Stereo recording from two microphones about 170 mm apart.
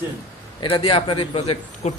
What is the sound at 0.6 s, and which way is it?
A man's voice, 30° left (ahead or behind).